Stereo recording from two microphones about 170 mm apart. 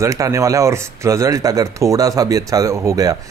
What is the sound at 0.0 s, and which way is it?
Speech, 20° right (ahead or behind).